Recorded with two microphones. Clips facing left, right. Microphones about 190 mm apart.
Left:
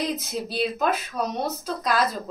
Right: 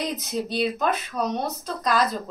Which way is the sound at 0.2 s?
5° left (ahead or behind).